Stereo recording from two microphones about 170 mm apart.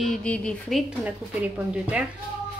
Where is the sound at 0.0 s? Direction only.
5° left (ahead or behind).